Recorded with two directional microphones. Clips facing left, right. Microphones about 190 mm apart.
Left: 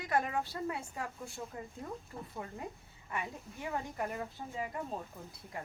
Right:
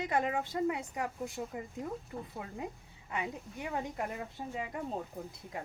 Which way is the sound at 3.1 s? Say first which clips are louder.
Right 3 dB; 20° right (ahead or behind).